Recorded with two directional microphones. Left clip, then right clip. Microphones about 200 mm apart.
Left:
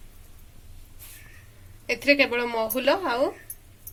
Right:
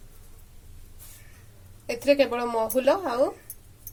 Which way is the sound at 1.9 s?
30° right (ahead or behind).